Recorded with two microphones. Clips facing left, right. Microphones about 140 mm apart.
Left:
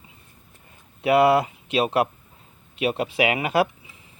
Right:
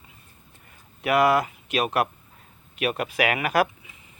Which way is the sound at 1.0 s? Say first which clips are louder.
Left 3 dB; 25° left (ahead or behind).